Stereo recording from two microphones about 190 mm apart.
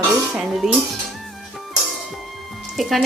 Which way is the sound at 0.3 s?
Centre (ahead or behind).